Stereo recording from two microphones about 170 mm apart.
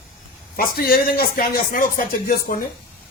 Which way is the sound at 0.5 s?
60° left (ahead or behind).